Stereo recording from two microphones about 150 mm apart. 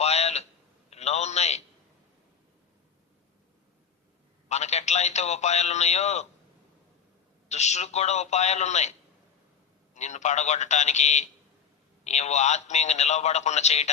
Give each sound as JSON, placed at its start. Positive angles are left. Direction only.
{"t": 0.0, "sound": "a sound", "side_deg": 45}
{"t": 4.4, "sound": "a man's voice", "side_deg": 50}
{"t": 7.4, "sound": "a man's voice", "side_deg": 50}